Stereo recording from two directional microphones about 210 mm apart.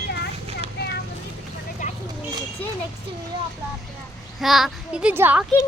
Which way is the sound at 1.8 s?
35° left (ahead or behind).